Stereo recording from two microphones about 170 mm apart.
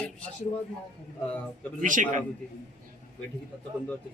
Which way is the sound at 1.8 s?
50° right (ahead or behind).